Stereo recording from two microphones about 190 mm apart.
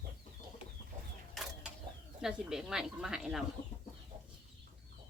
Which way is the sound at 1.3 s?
Centre (ahead or behind).